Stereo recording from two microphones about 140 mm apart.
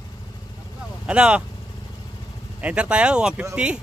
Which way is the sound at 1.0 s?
10° right (ahead or behind).